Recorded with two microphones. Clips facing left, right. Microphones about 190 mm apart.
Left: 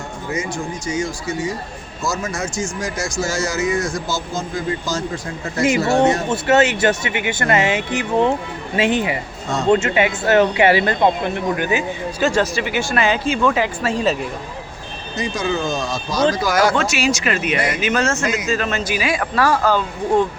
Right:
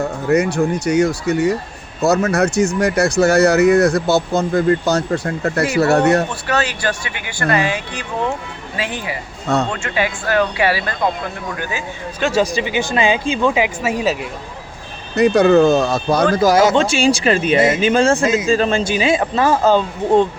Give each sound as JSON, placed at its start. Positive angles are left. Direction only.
{"t": 0.3, "sound": "speech", "side_deg": -65}
{"t": 6.3, "sound": "speech", "side_deg": 20}
{"t": 12.2, "sound": "speech", "side_deg": -10}
{"t": 15.1, "sound": "speech", "side_deg": -65}
{"t": 16.6, "sound": "speech", "side_deg": -25}